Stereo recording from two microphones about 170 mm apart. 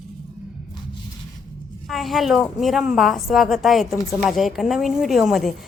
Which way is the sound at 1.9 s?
Centre (ahead or behind).